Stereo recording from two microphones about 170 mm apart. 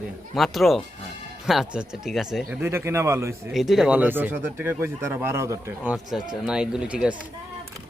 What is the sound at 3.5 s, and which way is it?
Speech, centre (ahead or behind).